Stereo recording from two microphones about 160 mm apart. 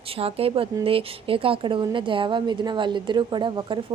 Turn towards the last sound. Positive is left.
turn(degrees=-30)  # may be behind; listen again after turning